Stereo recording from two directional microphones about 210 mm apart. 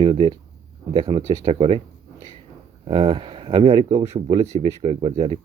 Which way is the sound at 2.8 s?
25° right (ahead or behind).